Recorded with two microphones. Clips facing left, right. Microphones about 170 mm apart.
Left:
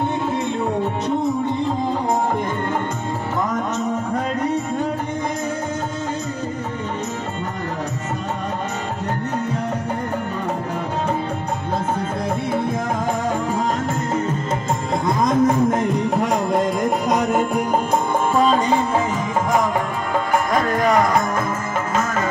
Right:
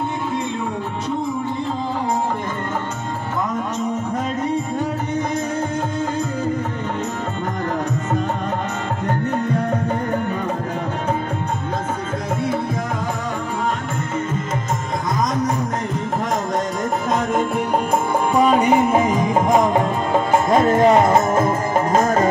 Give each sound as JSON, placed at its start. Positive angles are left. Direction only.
{"t": 15.0, "sound": "music", "side_deg": 25}
{"t": 17.3, "sound": "music", "side_deg": 5}
{"t": 18.3, "sound": "music", "side_deg": -15}